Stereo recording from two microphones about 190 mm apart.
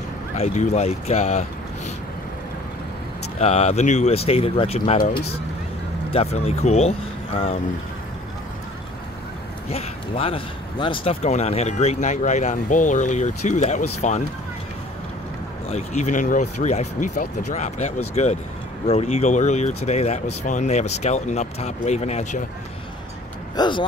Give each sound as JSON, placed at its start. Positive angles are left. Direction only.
{"t": 0.4, "sound": "speech", "side_deg": 35}
{"t": 3.3, "sound": "speech", "side_deg": 35}
{"t": 9.7, "sound": "speech", "side_deg": 30}
{"t": 15.7, "sound": "speech", "side_deg": 40}
{"t": 23.5, "sound": "speech", "side_deg": 25}